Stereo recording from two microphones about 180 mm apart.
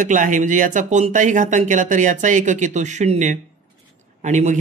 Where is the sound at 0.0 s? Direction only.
45° right (ahead or behind).